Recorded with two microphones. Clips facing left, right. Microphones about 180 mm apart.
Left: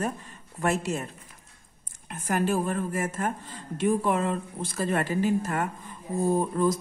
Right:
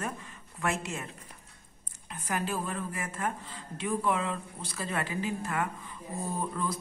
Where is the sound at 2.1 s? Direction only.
45° left (ahead or behind).